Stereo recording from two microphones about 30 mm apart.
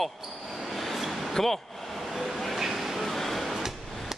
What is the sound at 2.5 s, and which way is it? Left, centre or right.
Vehicle, centre.